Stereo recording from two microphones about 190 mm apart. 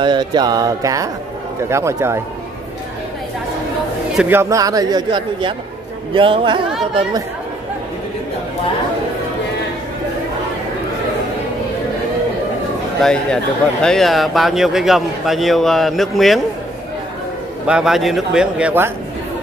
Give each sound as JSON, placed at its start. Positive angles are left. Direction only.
{"t": 0.0, "sound": "a man's voice", "side_deg": -20}
{"t": 4.2, "sound": "a man's voice", "side_deg": -10}
{"t": 13.0, "sound": "a man's voice", "side_deg": 5}
{"t": 17.6, "sound": "a man's voice", "side_deg": -5}